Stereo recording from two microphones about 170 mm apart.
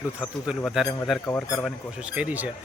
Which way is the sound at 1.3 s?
15° left (ahead or behind).